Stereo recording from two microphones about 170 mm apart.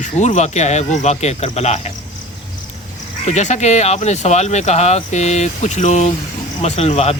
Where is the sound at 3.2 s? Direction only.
40° left (ahead or behind).